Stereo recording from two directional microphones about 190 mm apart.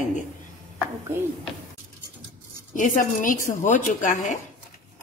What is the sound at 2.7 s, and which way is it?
A woman's voice, 45° left (ahead or behind).